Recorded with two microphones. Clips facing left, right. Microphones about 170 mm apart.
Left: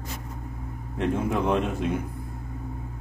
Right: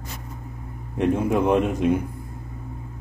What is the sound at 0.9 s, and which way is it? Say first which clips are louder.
Speech: right 5 dB; 15° right (ahead or behind).